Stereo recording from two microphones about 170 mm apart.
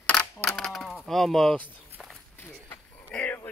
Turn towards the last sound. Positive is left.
turn(degrees=10)  # may be behind; listen again after turning